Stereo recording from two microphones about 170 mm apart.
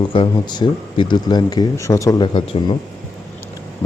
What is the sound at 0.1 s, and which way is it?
Speech, 30° left (ahead or behind).